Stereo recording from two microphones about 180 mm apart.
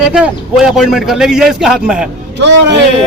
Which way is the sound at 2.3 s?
75° right (ahead or behind).